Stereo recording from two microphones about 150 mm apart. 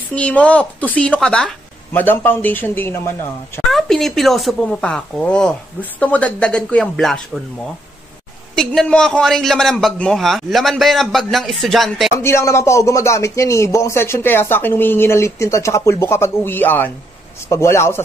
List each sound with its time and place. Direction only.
0.1 s speech: 10° left (ahead or behind)
3.7 s a man's voice: centre (ahead or behind)
8.5 s a man's voice: 5° left (ahead or behind)
12.1 s speech: 15° left (ahead or behind)